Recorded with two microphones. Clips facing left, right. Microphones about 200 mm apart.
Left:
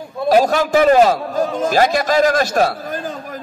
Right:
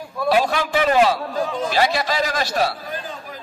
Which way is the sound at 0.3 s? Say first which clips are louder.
Left 6 dB; 40° left (ahead or behind).